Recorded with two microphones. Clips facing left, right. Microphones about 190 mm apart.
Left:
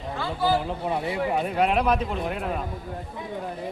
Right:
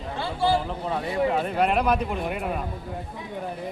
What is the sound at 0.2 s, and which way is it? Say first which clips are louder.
Speech: right 1 dB; 30° right (ahead or behind).